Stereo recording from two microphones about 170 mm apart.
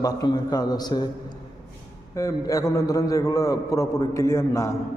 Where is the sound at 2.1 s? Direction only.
20° left (ahead or behind).